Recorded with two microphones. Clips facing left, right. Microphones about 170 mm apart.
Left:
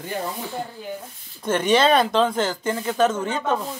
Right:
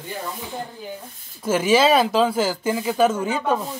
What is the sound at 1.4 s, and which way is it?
Speech, 5° right (ahead or behind).